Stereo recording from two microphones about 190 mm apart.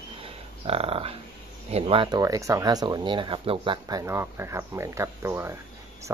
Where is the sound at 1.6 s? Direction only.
30° right (ahead or behind).